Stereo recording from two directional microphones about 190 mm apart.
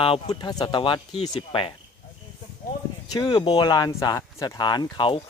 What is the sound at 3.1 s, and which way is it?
Speech, 20° left (ahead or behind).